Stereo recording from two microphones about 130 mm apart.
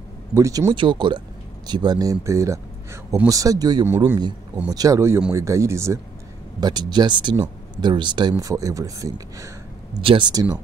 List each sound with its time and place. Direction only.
0.3 s speech: 25° right (ahead or behind)
3.8 s speech: 15° right (ahead or behind)
4.6 s speech: 25° right (ahead or behind)
6.6 s speech: 35° right (ahead or behind)
10.0 s speech: 40° right (ahead or behind)